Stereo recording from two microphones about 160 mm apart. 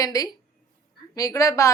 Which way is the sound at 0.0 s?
20° left (ahead or behind).